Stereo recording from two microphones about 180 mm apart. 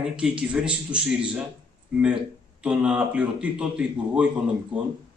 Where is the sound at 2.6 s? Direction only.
5° right (ahead or behind).